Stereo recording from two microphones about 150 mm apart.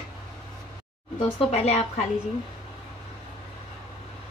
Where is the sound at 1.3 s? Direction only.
50° left (ahead or behind).